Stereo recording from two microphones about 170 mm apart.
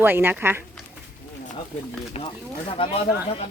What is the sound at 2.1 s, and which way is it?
Speech, 30° left (ahead or behind).